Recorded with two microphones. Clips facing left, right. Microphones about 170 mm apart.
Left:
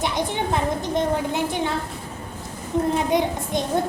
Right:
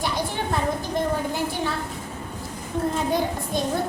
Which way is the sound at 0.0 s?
20° left (ahead or behind).